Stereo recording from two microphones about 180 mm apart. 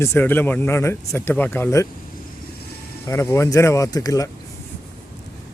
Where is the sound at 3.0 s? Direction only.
15° left (ahead or behind).